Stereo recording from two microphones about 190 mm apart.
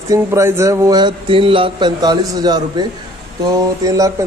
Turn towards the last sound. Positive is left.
turn(degrees=-20)  # may be behind; listen again after turning